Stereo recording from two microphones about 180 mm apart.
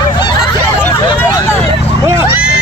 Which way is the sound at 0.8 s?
10° left (ahead or behind).